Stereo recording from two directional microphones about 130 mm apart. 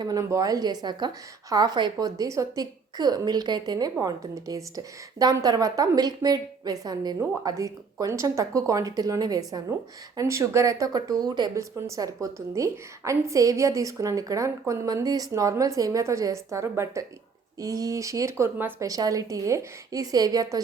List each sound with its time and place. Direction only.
0.0 s a woman's voice: 25° right (ahead or behind)
18.9 s speech: 30° right (ahead or behind)